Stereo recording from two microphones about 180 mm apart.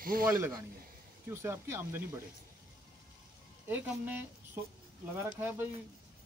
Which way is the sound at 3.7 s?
10° right (ahead or behind).